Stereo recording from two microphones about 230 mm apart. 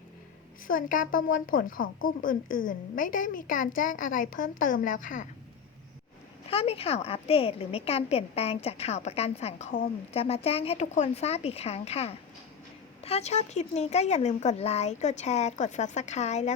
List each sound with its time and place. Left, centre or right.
0.7 s a woman's voice: left
6.5 s a woman's voice: left